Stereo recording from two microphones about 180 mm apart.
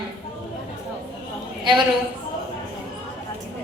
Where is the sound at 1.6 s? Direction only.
25° right (ahead or behind).